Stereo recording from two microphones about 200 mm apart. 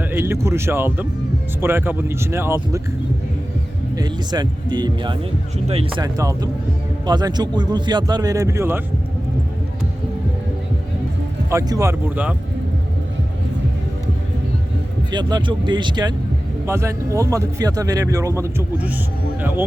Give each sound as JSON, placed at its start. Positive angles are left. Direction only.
{"t": 0.0, "sound": "a man's voice", "side_deg": -10}
{"t": 3.9, "sound": "speech", "side_deg": -20}
{"t": 6.0, "sound": "a man's voice", "side_deg": -20}
{"t": 11.5, "sound": "a man's voice", "side_deg": -15}
{"t": 15.1, "sound": "a man's voice", "side_deg": -20}